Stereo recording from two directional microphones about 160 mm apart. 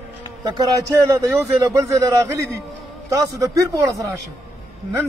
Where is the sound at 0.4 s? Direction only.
20° right (ahead or behind).